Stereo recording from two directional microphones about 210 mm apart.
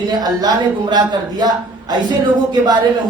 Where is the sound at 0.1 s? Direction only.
20° right (ahead or behind).